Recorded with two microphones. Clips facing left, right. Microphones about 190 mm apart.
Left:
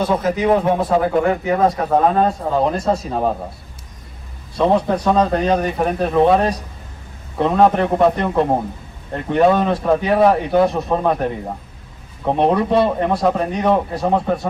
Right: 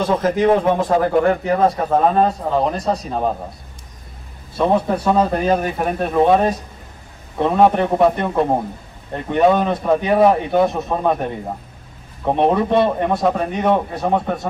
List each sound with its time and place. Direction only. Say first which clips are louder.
0.2 s speech: right 1 dB; 45° right (ahead or behind)
1.1 s speech: right 1 dB; centre (ahead or behind)
4.6 s speech: left 1 dB; 5° right (ahead or behind)